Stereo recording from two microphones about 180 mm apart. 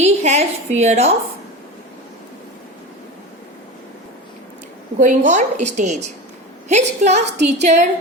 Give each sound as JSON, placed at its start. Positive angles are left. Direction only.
{"t": 0.0, "sound": "a woman's voice", "side_deg": -40}
{"t": 4.9, "sound": "a woman's voice", "side_deg": -45}